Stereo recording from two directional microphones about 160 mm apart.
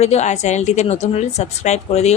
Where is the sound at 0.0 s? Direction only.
45° left (ahead or behind).